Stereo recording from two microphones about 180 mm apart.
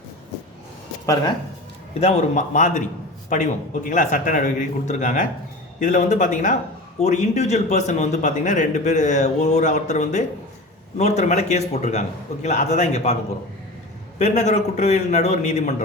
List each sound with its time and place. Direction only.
1.0 s speech: 20° left (ahead or behind)
2.0 s a man's voice: 35° left (ahead or behind)
14.2 s speech: 40° left (ahead or behind)